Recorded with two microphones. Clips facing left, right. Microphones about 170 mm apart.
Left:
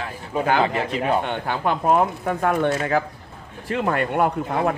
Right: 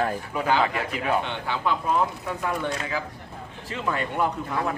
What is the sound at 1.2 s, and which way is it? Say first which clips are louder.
Speech: left 4 dB; 50° left (ahead or behind).